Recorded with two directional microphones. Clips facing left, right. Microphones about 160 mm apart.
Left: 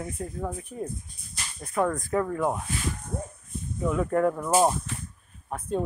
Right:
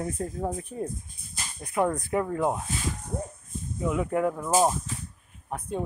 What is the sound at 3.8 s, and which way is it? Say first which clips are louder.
Speech: left 2 dB; 10° right (ahead or behind).